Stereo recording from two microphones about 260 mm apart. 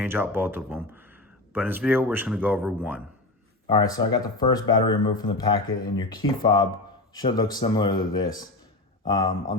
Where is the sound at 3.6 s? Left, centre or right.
Centre.